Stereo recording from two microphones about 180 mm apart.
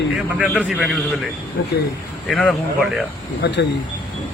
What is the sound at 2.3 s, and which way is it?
Speech, centre (ahead or behind).